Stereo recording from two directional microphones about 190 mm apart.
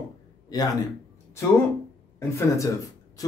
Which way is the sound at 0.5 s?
20° left (ahead or behind).